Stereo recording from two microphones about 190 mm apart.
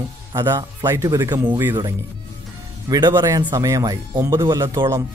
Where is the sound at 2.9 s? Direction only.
20° right (ahead or behind).